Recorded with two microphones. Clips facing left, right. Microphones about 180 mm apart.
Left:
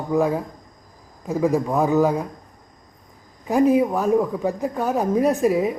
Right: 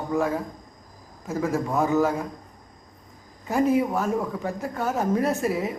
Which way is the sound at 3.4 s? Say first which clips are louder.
Left 5 dB; 15° left (ahead or behind).